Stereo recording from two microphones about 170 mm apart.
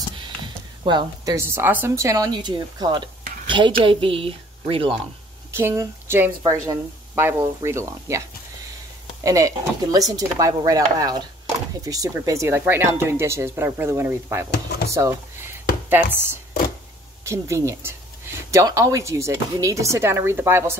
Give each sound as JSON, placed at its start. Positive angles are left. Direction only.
{"t": 0.8, "sound": "a woman's voice", "side_deg": -25}
{"t": 5.5, "sound": "speech", "side_deg": -15}
{"t": 9.2, "sound": "a woman's voice", "side_deg": -20}